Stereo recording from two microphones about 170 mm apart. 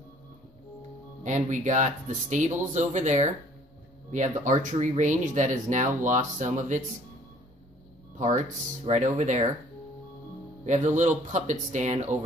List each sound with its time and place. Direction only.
1.2 s speech: 45° right (ahead or behind)
8.2 s speech: 45° right (ahead or behind)
10.6 s speech: 45° right (ahead or behind)